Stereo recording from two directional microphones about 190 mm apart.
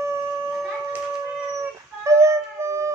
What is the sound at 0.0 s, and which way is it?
Shofar, 15° right (ahead or behind).